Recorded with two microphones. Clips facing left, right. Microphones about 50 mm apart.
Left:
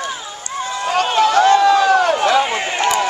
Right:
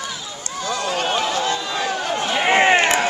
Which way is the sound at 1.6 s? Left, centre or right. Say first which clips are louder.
Left 11 dB; left.